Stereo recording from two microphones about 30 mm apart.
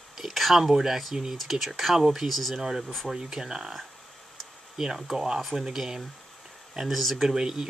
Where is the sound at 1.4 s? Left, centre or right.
Centre.